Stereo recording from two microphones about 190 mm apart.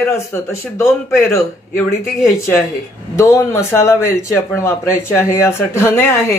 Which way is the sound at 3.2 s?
15° left (ahead or behind).